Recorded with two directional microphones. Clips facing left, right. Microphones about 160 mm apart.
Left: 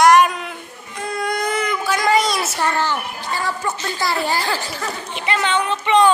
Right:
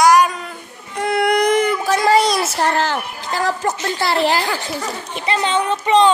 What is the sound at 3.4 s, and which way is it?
Speech, 40° right (ahead or behind).